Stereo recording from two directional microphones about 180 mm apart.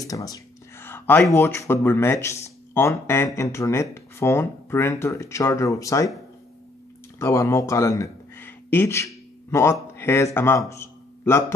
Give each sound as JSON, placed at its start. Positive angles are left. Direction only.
{"t": 0.0, "sound": "speech", "side_deg": 20}
{"t": 7.2, "sound": "speech", "side_deg": 15}
{"t": 10.7, "sound": "music", "side_deg": 15}